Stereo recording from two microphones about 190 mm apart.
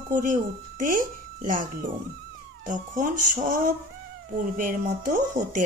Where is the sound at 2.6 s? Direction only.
40° right (ahead or behind).